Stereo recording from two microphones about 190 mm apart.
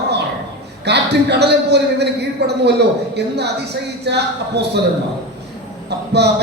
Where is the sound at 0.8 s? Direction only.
60° right (ahead or behind).